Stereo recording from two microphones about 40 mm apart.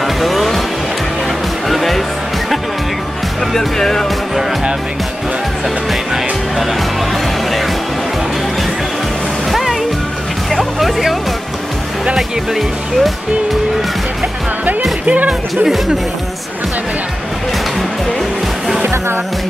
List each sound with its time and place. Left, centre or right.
0.0 s music: centre
1.7 s music: centre
3.5 s speech: centre
9.5 s music: centre
12.2 s speech: centre
15.0 s speech: right